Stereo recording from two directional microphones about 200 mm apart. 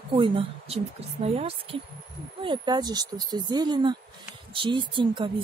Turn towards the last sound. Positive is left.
turn(degrees=-25)  # may be behind; listen again after turning